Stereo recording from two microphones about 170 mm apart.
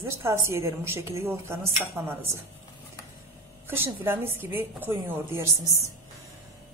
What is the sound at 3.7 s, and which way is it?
A woman's voice, 15° right (ahead or behind).